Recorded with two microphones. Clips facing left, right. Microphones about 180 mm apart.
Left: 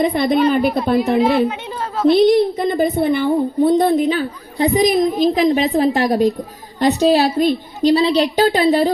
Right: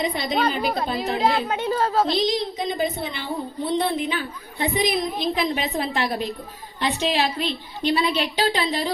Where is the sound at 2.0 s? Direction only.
60° left (ahead or behind).